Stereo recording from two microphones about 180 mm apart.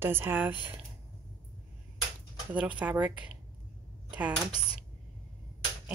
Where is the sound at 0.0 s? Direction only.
10° right (ahead or behind).